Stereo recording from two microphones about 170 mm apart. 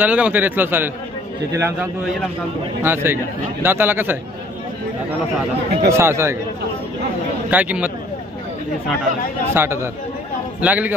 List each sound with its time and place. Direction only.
0.0 s a man's voice: 10° right (ahead or behind)
5.9 s a man's voice: 15° right (ahead or behind)
7.5 s a man's voice: 10° right (ahead or behind)
9.5 s a man's voice: 15° right (ahead or behind)